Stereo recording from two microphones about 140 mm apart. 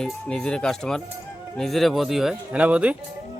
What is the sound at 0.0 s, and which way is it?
Speech, 5° left (ahead or behind).